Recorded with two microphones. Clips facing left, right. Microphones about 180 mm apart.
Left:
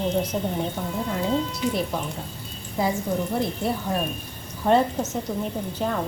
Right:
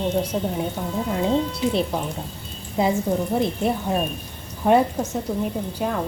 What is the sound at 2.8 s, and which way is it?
Speech, 20° right (ahead or behind).